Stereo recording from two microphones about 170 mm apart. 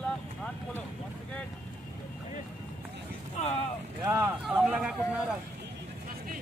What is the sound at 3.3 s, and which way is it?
Vehicle, 40° left (ahead or behind).